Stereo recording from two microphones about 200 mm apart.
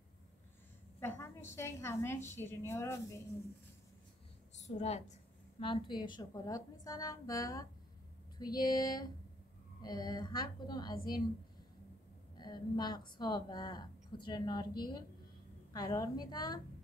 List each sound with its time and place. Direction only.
1.0 s a woman's voice: 10° left (ahead or behind)
4.6 s a woman's voice: 35° left (ahead or behind)
5.6 s a woman's voice: 25° left (ahead or behind)
12.4 s a woman's voice: 20° left (ahead or behind)